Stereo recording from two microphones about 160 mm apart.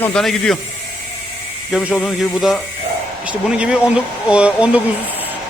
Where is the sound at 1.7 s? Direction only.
Centre (ahead or behind).